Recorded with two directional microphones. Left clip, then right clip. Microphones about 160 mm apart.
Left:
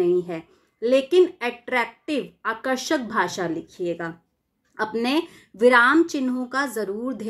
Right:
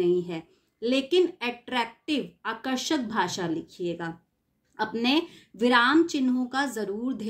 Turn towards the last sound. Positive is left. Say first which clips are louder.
# left 3 dB
turn(degrees=-25)  # may be behind; listen again after turning